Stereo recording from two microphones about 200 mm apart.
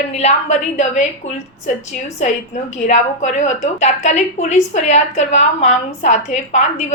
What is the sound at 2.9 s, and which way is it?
A woman's voice, 35° left (ahead or behind).